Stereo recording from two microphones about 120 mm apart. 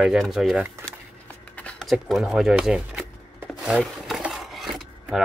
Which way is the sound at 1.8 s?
Centre (ahead or behind).